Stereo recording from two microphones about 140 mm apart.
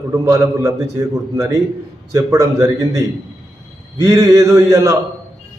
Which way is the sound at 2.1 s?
20° right (ahead or behind).